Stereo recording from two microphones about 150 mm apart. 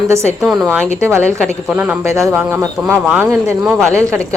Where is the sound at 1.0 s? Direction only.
20° right (ahead or behind).